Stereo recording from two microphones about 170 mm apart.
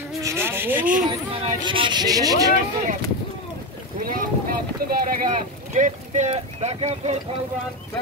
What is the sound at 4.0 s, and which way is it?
Boat, 55° right (ahead or behind).